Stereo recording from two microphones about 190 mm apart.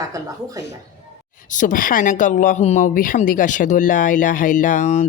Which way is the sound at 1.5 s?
45° left (ahead or behind).